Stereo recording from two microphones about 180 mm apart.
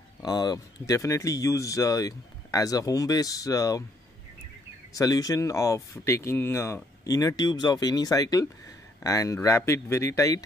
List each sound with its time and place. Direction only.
0.2 s speech: 20° left (ahead or behind)
4.9 s speech: 20° left (ahead or behind)